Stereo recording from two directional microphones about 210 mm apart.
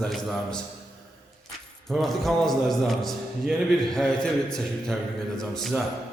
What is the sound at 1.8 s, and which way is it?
A man's voice, centre (ahead or behind).